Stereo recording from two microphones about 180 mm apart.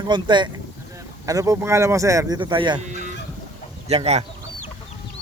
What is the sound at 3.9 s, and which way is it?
Speech, 35° right (ahead or behind).